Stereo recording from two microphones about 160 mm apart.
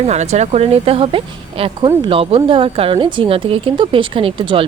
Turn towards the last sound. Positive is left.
turn(degrees=-35)  # may be behind; listen again after turning